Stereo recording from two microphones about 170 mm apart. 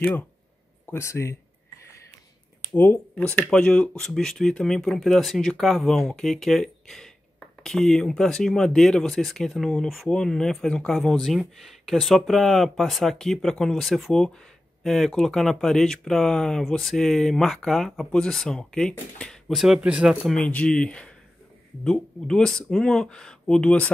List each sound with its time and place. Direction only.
0.8 s speech: 15° left (ahead or behind)
2.7 s speech: 10° left (ahead or behind)